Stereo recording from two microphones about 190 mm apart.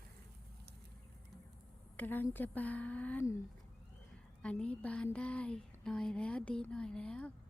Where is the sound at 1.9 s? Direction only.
10° left (ahead or behind).